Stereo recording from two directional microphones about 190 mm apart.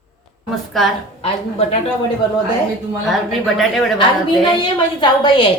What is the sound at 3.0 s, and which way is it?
Speech, centre (ahead or behind).